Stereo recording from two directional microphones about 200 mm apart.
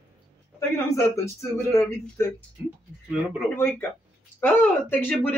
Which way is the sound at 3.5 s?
10° left (ahead or behind).